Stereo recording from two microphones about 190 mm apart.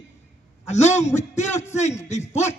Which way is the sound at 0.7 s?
35° left (ahead or behind).